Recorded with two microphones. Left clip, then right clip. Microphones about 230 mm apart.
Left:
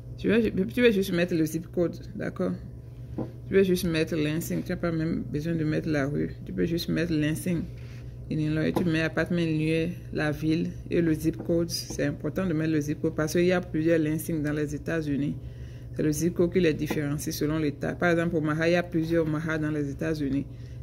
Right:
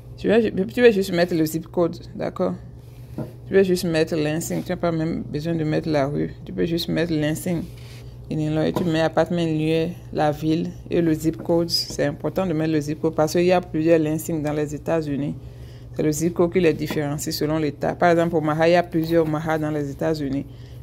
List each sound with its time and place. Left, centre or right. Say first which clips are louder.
0.2 s speech: right 6 dB; centre